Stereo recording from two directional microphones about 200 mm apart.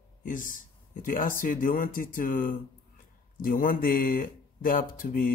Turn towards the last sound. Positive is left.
turn(degrees=45)  # may be behind; listen again after turning